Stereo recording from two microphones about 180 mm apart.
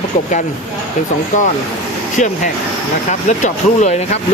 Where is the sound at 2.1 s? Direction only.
45° left (ahead or behind).